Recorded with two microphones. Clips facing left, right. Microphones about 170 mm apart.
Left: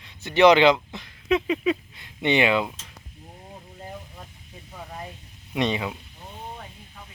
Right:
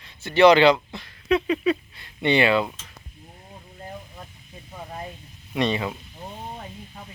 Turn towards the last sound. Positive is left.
turn(degrees=15)  # may be behind; listen again after turning